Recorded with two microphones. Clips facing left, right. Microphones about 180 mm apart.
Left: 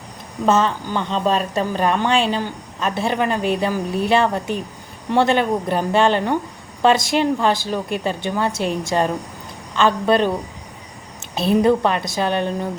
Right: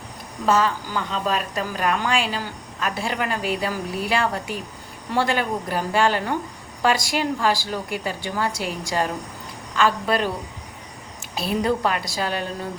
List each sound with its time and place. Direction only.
0.4 s a woman's voice: 25° left (ahead or behind)
11.3 s a woman's voice: 20° left (ahead or behind)